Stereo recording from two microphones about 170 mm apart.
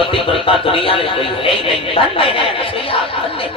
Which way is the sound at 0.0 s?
30° left (ahead or behind).